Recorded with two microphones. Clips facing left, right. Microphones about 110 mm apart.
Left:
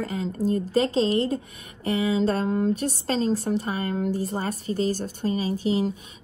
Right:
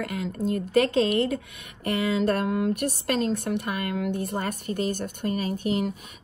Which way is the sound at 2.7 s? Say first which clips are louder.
Left 1 dB; 65° right (ahead or behind).